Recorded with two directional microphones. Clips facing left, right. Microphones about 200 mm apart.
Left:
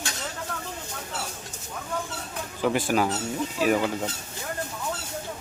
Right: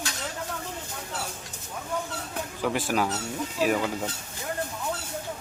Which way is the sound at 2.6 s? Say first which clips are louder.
Left 3 dB; centre (ahead or behind).